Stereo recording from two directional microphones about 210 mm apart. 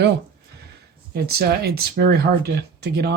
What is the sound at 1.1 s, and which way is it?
Speech, 50° right (ahead or behind).